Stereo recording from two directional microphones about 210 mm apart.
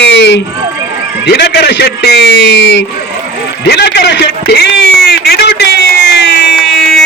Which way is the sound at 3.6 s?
50° left (ahead or behind).